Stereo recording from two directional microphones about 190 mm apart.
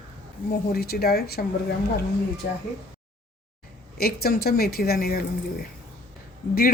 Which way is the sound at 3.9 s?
55° left (ahead or behind).